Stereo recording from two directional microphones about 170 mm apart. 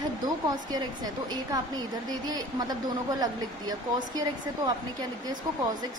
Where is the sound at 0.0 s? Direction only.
25° right (ahead or behind).